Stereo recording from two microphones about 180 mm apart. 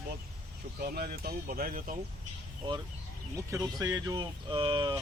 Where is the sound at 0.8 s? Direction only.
55° right (ahead or behind).